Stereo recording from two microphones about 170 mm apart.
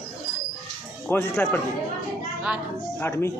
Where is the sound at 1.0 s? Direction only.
10° left (ahead or behind).